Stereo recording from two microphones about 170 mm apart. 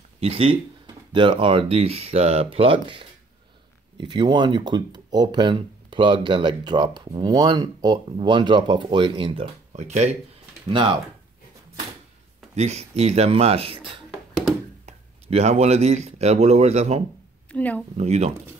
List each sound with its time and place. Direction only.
0.2 s speech: 35° right (ahead or behind)
10.7 s speech: 30° right (ahead or behind)
12.5 s speech: 40° right (ahead or behind)
17.5 s speech: 10° left (ahead or behind)
17.9 s speech: 40° right (ahead or behind)